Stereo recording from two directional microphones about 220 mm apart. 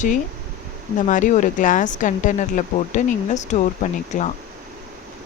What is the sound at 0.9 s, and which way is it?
Speech, 35° left (ahead or behind).